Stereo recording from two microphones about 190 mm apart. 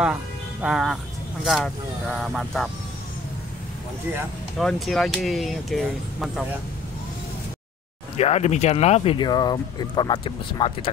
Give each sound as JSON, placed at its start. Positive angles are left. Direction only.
{"t": 0.0, "sound": "speech", "side_deg": -5}
{"t": 4.6, "sound": "speech", "side_deg": 0}
{"t": 8.2, "sound": "speech", "side_deg": 35}